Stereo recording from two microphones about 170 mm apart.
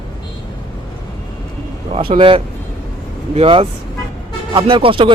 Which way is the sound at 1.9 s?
35° right (ahead or behind).